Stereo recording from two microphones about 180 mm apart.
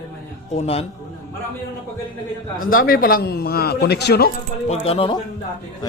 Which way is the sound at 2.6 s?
50° left (ahead or behind).